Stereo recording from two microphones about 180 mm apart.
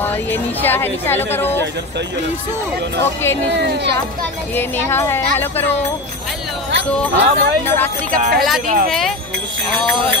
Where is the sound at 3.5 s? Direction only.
70° right (ahead or behind).